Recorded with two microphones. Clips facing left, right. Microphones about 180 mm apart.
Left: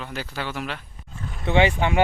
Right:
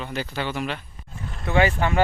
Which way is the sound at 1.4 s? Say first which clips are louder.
Left 1 dB; 20° left (ahead or behind).